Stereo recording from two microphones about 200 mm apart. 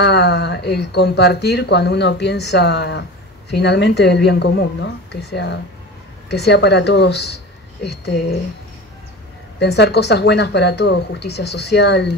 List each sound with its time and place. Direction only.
0.0 s speech: 55° left (ahead or behind)
9.6 s speech: 55° left (ahead or behind)